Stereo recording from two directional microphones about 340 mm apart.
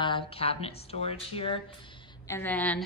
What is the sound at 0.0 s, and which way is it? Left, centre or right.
A woman's voice, centre.